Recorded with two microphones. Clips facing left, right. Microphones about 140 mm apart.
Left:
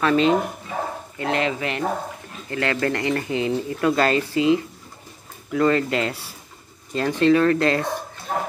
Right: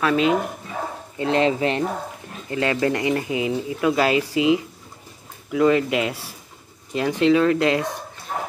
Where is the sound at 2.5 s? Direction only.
15° right (ahead or behind).